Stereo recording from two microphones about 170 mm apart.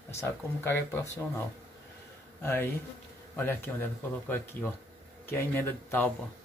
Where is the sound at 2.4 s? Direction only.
15° left (ahead or behind).